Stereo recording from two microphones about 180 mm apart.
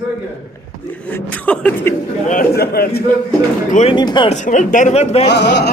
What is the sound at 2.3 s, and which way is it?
Speech, 55° left (ahead or behind).